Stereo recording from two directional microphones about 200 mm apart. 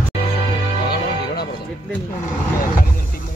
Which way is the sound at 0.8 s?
50° left (ahead or behind).